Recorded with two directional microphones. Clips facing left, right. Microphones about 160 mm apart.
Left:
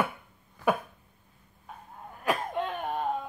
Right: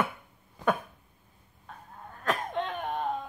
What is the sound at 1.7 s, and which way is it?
Sneeze, 10° left (ahead or behind).